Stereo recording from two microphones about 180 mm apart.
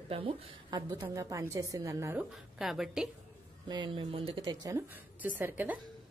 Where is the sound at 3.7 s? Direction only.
25° right (ahead or behind).